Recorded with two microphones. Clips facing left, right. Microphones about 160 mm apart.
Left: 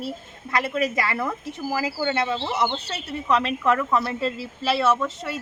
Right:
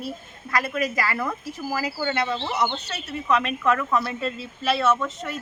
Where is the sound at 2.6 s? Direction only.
30° left (ahead or behind).